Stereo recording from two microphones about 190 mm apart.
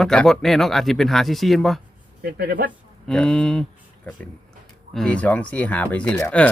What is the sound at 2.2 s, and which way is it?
Speech, 55° right (ahead or behind).